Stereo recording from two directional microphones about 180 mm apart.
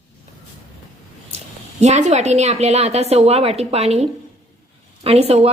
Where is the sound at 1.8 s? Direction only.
40° right (ahead or behind).